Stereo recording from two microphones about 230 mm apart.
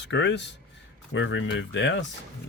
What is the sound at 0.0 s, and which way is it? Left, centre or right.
Speech, left.